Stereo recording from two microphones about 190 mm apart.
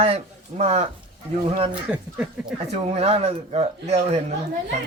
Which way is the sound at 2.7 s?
35° right (ahead or behind).